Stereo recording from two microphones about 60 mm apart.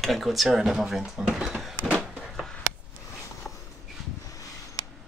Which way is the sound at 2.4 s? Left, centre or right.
Centre.